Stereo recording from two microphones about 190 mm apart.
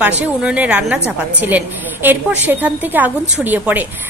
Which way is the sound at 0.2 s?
5° right (ahead or behind).